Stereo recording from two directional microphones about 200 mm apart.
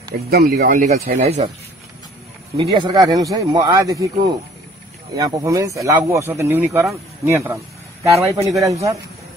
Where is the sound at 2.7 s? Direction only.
25° right (ahead or behind).